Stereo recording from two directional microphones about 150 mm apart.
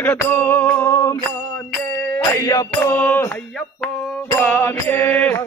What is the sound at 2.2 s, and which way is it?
Music, 25° left (ahead or behind).